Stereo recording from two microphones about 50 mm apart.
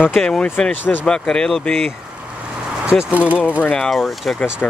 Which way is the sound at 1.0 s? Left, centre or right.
Centre.